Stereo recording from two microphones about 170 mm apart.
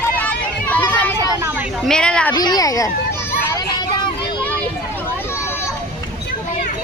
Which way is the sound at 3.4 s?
20° left (ahead or behind).